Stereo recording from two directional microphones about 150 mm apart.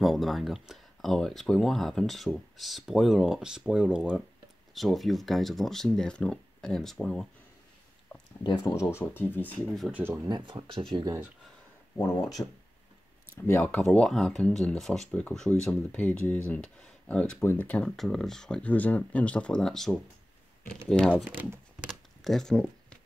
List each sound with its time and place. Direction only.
0.0 s speech: centre (ahead or behind)
8.5 s speech: 30° left (ahead or behind)
8.8 s speech: 10° left (ahead or behind)
9.8 s speech: 10° right (ahead or behind)
10.2 s speech: 30° right (ahead or behind)
12.4 s speech: 20° left (ahead or behind)
21.2 s speech: 10° right (ahead or behind)
22.2 s speech: centre (ahead or behind)